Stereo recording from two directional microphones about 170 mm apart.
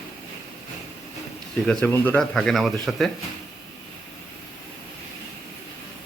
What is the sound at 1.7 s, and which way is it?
Speech, 5° left (ahead or behind).